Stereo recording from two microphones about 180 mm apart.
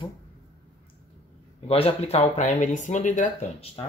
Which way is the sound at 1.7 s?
35° left (ahead or behind).